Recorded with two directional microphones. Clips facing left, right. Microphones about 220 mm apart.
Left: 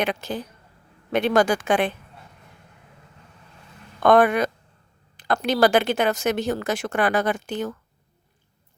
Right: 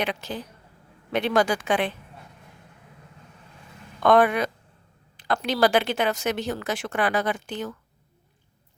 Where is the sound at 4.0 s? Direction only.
50° left (ahead or behind).